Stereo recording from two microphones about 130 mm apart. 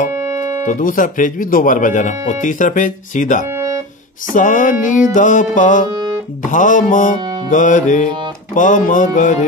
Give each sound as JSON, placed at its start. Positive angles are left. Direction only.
{"t": 0.1, "sound": "music", "side_deg": -20}
{"t": 0.7, "sound": "speech", "side_deg": 90}
{"t": 3.5, "sound": "music", "side_deg": -20}
{"t": 4.3, "sound": "music", "side_deg": 90}
{"t": 5.1, "sound": "speech", "side_deg": 80}
{"t": 5.9, "sound": "music", "side_deg": -30}
{"t": 6.5, "sound": "speech", "side_deg": 85}
{"t": 8.5, "sound": "speech", "side_deg": 85}